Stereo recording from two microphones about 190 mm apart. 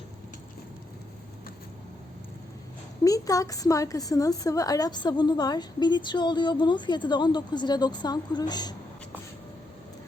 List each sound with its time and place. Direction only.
3.0 s a woman's voice: 20° left (ahead or behind)